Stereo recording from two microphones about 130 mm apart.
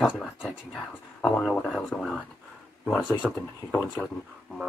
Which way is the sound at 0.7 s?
5° left (ahead or behind).